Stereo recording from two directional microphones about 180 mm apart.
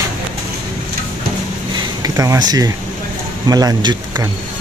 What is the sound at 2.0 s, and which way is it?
Speech, 20° right (ahead or behind).